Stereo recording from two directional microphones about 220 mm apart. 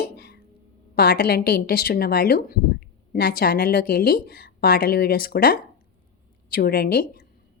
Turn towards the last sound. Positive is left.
turn(degrees=45)  # may be behind; listen again after turning